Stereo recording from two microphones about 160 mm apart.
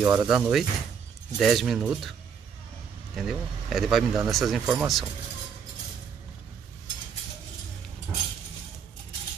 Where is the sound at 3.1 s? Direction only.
Centre (ahead or behind).